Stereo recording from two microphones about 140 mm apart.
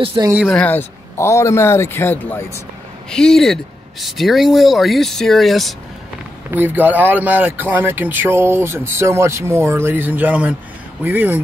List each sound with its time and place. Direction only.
0.0 s speech: 40° right (ahead or behind)
0.5 s a man's voice: 10° left (ahead or behind)
3.1 s speech: 5° left (ahead or behind)
6.5 s speech: 15° right (ahead or behind)